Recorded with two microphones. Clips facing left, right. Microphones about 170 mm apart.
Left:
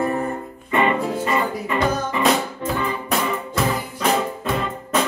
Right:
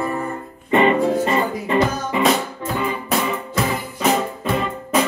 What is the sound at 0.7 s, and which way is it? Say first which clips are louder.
Music: right 4 dB; 30° right (ahead or behind).